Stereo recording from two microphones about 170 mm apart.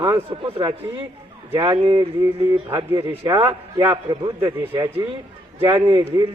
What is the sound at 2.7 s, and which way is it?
Speech, 15° right (ahead or behind).